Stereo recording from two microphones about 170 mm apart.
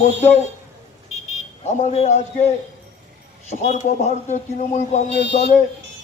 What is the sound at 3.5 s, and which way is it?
A man's voice, 40° left (ahead or behind).